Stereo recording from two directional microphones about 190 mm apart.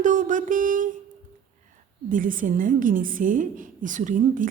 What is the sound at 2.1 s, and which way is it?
A woman's voice, 45° right (ahead or behind).